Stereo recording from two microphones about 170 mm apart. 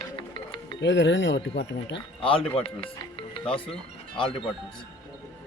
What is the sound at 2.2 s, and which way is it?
A man's voice, 30° left (ahead or behind).